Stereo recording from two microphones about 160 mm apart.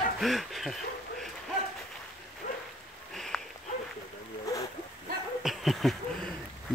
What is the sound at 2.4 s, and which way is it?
Rain, 50° left (ahead or behind).